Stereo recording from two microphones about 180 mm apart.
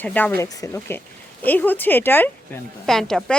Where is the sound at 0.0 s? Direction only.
10° left (ahead or behind).